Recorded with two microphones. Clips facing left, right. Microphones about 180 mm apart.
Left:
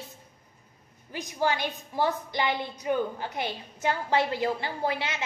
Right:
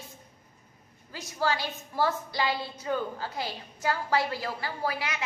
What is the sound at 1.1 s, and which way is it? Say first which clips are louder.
A woman's voice: left 2 dB; 15° left (ahead or behind).